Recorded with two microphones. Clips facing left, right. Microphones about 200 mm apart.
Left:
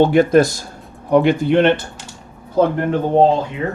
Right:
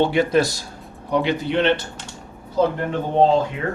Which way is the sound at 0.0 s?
50° left (ahead or behind).